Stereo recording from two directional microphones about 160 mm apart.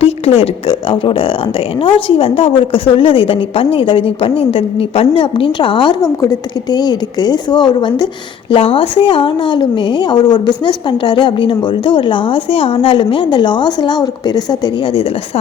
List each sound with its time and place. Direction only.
0.0 s a woman's voice: 35° left (ahead or behind)